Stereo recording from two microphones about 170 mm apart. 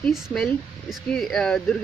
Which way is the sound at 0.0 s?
5° left (ahead or behind).